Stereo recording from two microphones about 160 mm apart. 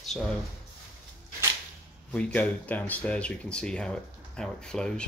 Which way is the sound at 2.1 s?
5° left (ahead or behind).